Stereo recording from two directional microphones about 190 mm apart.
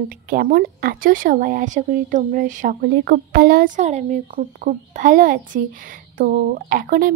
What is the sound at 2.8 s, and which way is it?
Speech, 55° right (ahead or behind).